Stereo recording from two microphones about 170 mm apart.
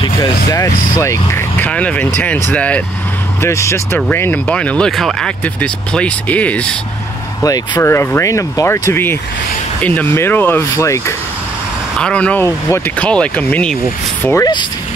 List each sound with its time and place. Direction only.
0.0 s speech: 20° left (ahead or behind)
7.4 s speech: 20° left (ahead or behind)
12.0 s speech: 5° left (ahead or behind)
14.2 s speech: 20° left (ahead or behind)